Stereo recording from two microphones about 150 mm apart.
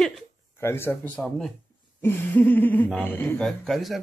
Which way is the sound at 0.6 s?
15° left (ahead or behind).